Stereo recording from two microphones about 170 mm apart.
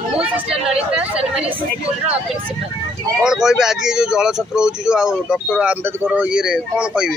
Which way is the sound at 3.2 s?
5° right (ahead or behind).